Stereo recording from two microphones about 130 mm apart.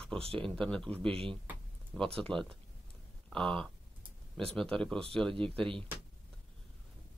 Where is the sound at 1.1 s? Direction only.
45° right (ahead or behind).